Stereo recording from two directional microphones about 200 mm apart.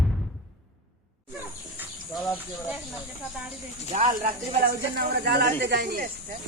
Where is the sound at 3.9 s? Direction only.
35° right (ahead or behind).